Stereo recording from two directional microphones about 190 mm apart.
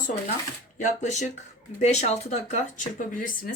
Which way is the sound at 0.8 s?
40° left (ahead or behind).